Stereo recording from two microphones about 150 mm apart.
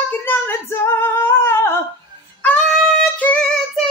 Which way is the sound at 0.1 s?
15° left (ahead or behind).